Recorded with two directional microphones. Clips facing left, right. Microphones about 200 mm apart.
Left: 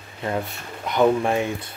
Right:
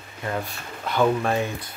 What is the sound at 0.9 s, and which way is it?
Speech, 20° left (ahead or behind).